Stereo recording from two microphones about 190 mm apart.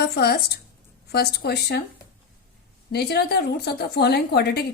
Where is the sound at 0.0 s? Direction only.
55° left (ahead or behind).